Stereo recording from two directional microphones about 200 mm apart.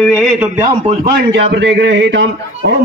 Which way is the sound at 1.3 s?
65° right (ahead or behind).